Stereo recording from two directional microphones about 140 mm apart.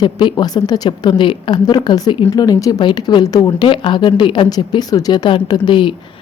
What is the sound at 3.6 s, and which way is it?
Speech, 35° left (ahead or behind).